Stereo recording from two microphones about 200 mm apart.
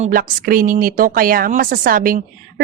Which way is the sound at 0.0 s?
45° right (ahead or behind).